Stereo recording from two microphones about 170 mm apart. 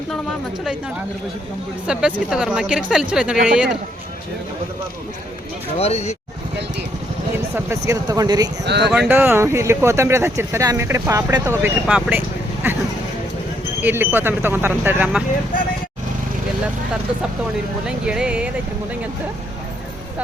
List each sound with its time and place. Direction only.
1.9 s speech: 5° right (ahead or behind)
5.7 s speech: 40° left (ahead or behind)
7.9 s speech: 20° right (ahead or behind)
8.6 s speech: 85° right
8.9 s speech: 10° right (ahead or behind)
13.8 s speech: 10° right (ahead or behind)
17.8 s speech: 5° right (ahead or behind)